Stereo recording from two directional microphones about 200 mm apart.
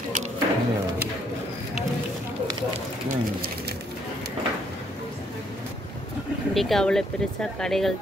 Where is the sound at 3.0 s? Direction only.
45° right (ahead or behind).